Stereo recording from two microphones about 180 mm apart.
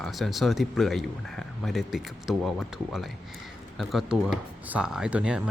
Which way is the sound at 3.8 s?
Centre (ahead or behind).